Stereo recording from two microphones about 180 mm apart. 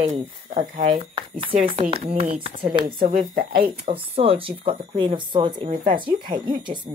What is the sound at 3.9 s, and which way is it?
Speech, 30° right (ahead or behind).